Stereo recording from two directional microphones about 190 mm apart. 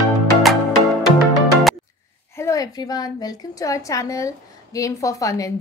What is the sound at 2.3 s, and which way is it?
Speech, 15° left (ahead or behind).